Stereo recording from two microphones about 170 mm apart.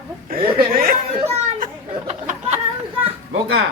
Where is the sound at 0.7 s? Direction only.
60° right (ahead or behind).